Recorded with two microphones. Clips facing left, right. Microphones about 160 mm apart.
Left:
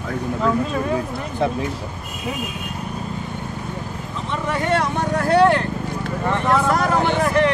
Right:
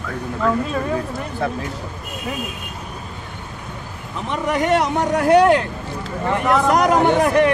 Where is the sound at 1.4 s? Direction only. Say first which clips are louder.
Left 3 dB; 20° left (ahead or behind).